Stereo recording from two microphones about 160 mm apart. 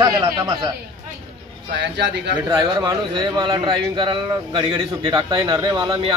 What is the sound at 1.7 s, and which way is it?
Speech, 90° right.